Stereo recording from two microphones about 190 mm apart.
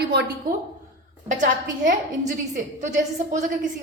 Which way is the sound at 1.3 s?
45° right (ahead or behind).